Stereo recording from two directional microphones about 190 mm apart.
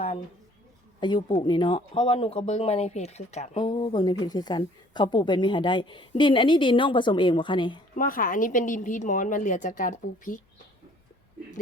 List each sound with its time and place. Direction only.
0.9 s speech: 25° left (ahead or behind)
3.7 s a woman's voice: 25° left (ahead or behind)
7.9 s a woman's voice: 45° left (ahead or behind)